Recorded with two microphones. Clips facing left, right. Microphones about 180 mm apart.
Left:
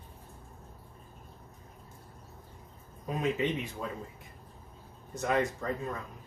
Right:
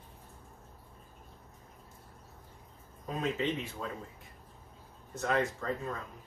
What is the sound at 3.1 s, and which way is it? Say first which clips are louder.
Speech: left 2 dB; 15° left (ahead or behind).